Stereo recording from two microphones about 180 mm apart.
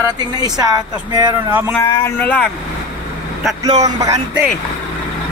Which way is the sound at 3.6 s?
20° right (ahead or behind).